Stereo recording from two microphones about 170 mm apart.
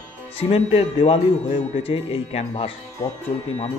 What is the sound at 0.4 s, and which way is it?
Speech, 35° left (ahead or behind).